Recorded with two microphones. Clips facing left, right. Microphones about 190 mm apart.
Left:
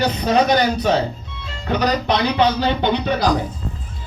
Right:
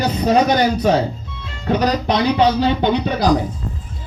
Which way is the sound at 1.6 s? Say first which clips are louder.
Right 2 dB; 40° right (ahead or behind).